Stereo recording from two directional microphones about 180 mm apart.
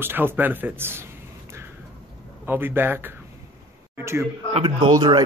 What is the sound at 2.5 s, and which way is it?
A man's voice, 10° right (ahead or behind).